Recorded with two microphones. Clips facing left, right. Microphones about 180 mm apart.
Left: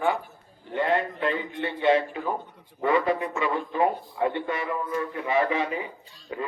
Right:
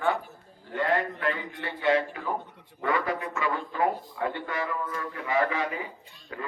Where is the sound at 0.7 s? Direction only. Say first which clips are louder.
Left 2 dB; 20° left (ahead or behind).